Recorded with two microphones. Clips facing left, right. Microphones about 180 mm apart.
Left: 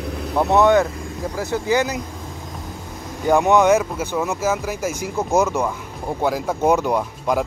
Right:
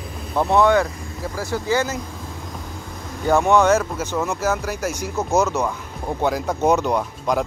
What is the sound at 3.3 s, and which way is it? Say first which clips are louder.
Speech: left 1 dB; 15° left (ahead or behind).